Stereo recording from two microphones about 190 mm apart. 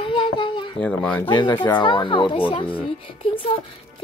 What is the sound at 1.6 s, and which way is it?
A woman's voice, 25° left (ahead or behind).